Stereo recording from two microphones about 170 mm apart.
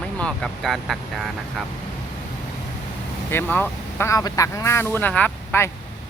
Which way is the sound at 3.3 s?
10° left (ahead or behind).